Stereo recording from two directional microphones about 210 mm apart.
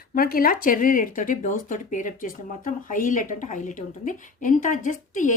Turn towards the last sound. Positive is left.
turn(degrees=35)  # may be behind; listen again after turning